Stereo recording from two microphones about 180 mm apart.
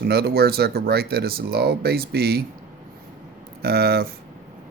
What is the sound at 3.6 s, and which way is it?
Speech, 60° right (ahead or behind).